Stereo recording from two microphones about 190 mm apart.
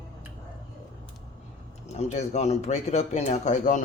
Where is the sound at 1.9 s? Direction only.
35° left (ahead or behind).